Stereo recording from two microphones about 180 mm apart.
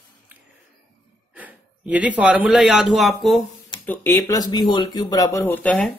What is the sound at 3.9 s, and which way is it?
Speech, 10° left (ahead or behind).